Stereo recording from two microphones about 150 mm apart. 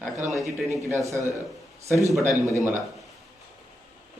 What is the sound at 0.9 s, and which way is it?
Speech, 20° right (ahead or behind).